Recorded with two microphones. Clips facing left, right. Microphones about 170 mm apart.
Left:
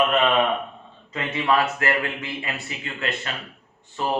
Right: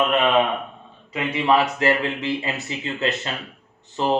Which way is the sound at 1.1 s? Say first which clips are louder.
Right 3 dB; 15° right (ahead or behind).